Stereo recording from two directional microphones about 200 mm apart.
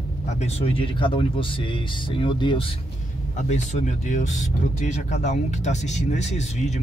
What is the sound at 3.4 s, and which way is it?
Speech, 35° left (ahead or behind).